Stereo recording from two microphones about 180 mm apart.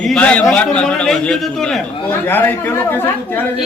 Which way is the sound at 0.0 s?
5° left (ahead or behind).